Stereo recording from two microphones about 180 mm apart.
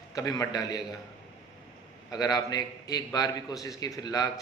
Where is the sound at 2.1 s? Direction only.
20° left (ahead or behind).